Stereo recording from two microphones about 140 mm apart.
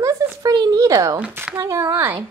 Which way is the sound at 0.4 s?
25° right (ahead or behind).